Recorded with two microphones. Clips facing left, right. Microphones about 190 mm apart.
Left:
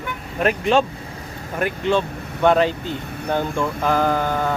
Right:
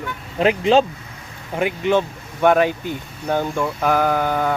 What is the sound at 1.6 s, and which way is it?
Speech, 15° right (ahead or behind).